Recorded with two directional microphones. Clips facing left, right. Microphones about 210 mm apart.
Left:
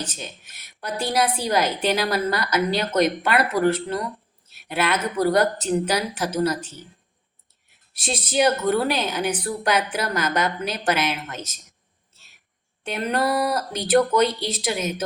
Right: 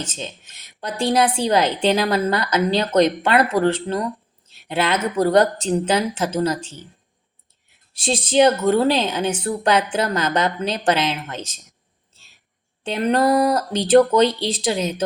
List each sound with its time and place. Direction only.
0.0 s a woman's voice: 25° right (ahead or behind)
7.9 s a woman's voice: 30° right (ahead or behind)
12.8 s a woman's voice: 30° right (ahead or behind)